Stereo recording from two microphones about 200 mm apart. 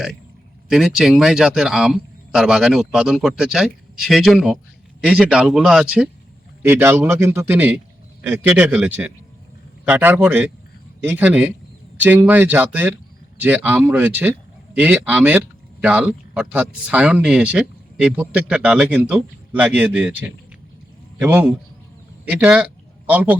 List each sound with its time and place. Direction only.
0.7 s speech: centre (ahead or behind)